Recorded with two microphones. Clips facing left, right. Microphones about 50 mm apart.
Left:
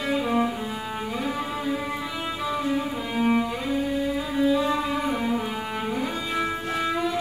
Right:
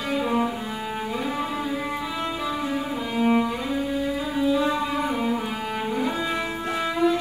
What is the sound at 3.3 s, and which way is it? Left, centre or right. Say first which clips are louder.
Cello: right 1 dB; centre.